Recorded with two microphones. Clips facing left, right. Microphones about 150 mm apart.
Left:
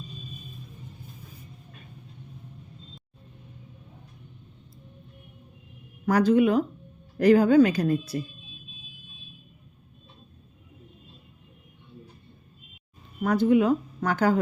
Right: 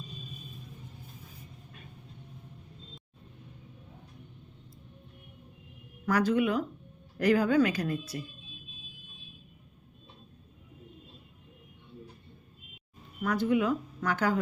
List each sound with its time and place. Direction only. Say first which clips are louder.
6.1 s speech: left 6 dB; 25° left (ahead or behind)
13.3 s speech: left 7 dB; 30° left (ahead or behind)